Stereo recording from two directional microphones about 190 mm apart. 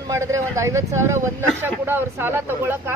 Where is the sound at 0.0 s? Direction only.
15° right (ahead or behind).